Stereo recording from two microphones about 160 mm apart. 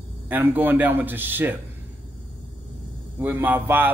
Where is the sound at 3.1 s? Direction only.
15° right (ahead or behind).